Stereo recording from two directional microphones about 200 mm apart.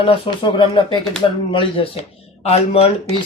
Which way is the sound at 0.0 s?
25° left (ahead or behind).